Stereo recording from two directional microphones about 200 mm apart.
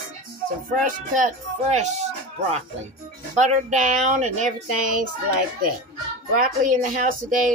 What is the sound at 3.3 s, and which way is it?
Speech, 35° right (ahead or behind).